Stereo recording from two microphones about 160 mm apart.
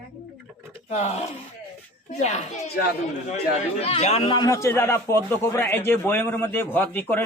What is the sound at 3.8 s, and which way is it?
Speech, 40° left (ahead or behind).